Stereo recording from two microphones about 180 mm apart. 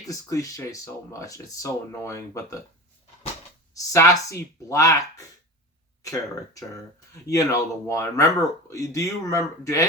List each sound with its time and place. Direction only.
0.1 s speech: 20° left (ahead or behind)
3.8 s speech: 20° left (ahead or behind)